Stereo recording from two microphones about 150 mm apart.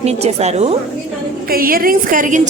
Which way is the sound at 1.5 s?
75° right (ahead or behind).